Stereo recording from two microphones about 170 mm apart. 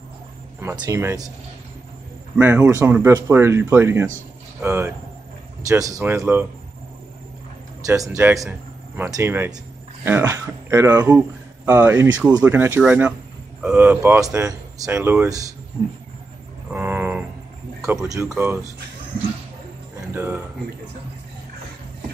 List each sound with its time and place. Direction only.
0.7 s speech: 20° right (ahead or behind)
2.3 s speech: 10° right (ahead or behind)
7.8 s speech: 20° right (ahead or behind)
16.7 s a sound: 10° right (ahead or behind)
18.0 s speech: 20° right (ahead or behind)
20.1 s speech: 15° right (ahead or behind)